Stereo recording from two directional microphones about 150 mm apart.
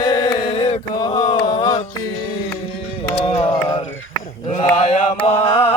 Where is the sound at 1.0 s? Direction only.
30° left (ahead or behind).